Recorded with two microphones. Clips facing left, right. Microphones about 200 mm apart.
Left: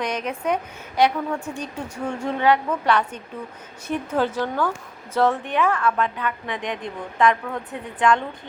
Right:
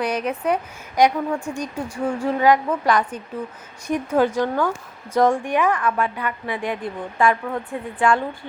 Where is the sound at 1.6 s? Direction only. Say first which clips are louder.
Right 4 dB; 10° right (ahead or behind).